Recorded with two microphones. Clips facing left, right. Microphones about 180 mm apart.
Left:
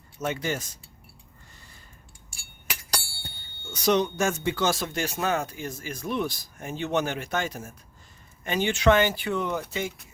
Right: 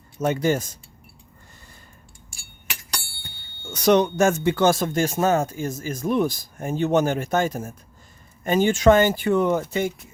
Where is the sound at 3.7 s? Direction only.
60° right (ahead or behind).